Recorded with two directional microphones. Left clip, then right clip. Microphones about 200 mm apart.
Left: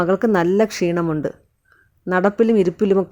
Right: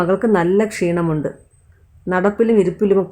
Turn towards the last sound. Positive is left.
turn(degrees=40)  # may be behind; listen again after turning